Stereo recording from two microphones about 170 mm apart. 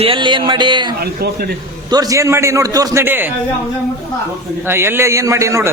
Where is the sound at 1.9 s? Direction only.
20° right (ahead or behind).